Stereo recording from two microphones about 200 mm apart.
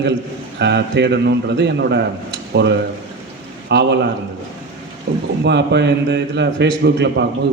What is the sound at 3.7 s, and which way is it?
Speech, 60° right (ahead or behind).